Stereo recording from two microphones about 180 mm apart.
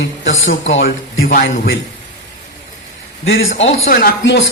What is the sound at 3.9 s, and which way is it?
Speech, 60° left (ahead or behind).